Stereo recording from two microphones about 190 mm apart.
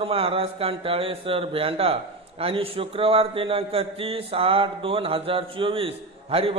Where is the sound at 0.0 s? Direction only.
30° right (ahead or behind).